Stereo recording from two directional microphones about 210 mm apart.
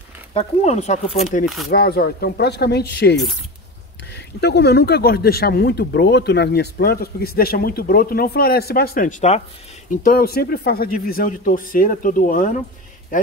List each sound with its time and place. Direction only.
0.3 s speech: 30° left (ahead or behind)
1.4 s speech: centre (ahead or behind)
1.7 s speech: 50° left (ahead or behind)